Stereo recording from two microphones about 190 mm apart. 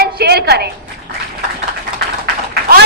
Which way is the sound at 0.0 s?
55° right (ahead or behind).